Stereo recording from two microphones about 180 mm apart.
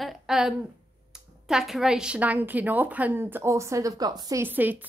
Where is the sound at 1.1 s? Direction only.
5° right (ahead or behind).